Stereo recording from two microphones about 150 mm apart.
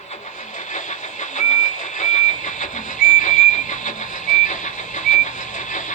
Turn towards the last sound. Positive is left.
turn(degrees=55)  # may be behind; listen again after turning